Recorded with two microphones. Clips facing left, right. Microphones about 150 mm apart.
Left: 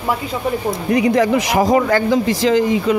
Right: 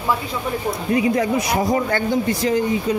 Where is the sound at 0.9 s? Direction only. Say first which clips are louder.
Left 4 dB; 80° left.